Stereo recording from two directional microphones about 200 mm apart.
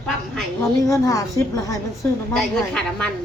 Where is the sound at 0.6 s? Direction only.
15° left (ahead or behind).